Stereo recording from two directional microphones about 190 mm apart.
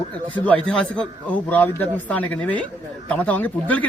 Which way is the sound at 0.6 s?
5° left (ahead or behind).